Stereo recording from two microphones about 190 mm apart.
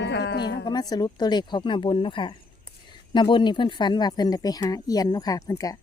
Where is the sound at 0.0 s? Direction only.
65° left (ahead or behind).